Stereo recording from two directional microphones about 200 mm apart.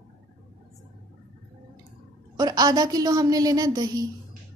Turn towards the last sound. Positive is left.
turn(degrees=-20)  # may be behind; listen again after turning